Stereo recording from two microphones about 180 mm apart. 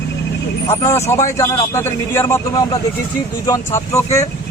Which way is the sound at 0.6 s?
15° left (ahead or behind).